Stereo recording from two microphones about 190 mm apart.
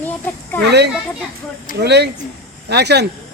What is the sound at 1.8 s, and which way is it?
Speech, 60° right (ahead or behind).